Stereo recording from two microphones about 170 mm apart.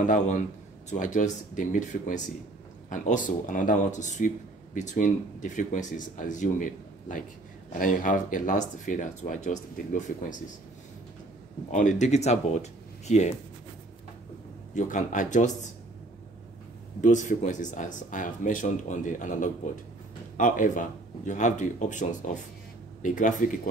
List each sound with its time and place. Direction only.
0.0 s speech: 45° left (ahead or behind)
11.7 s speech: 45° left (ahead or behind)
14.7 s speech: 50° left (ahead or behind)
17.0 s speech: 45° left (ahead or behind)